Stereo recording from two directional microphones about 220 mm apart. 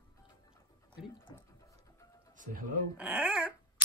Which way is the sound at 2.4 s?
40° right (ahead or behind).